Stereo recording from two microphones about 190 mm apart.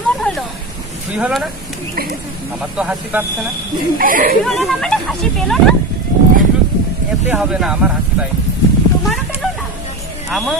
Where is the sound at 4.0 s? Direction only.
45° right (ahead or behind).